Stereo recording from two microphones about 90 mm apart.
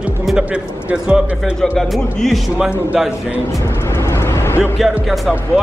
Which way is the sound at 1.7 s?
Centre (ahead or behind).